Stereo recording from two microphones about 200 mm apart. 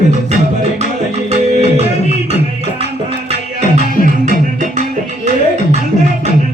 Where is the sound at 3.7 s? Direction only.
40° right (ahead or behind).